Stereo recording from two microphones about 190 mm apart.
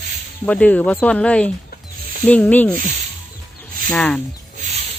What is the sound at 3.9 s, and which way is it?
Speech, 5° left (ahead or behind).